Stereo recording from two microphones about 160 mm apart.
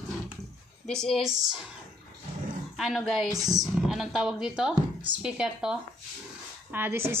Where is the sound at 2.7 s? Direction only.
Centre (ahead or behind).